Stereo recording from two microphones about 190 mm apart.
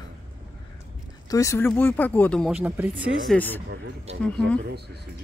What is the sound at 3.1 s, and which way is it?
Speech, 5° left (ahead or behind).